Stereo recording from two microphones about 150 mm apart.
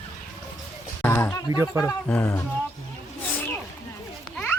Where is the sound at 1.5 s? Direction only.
15° right (ahead or behind).